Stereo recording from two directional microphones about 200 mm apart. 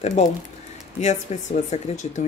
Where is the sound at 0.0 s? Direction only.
35° left (ahead or behind).